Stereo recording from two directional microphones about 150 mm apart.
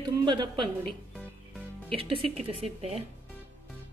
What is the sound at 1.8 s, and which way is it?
A woman's voice, 35° right (ahead or behind).